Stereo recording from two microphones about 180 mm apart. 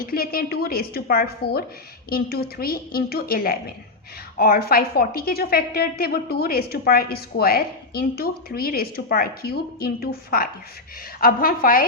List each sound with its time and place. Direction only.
0.0 s a woman's voice: 55° left (ahead or behind)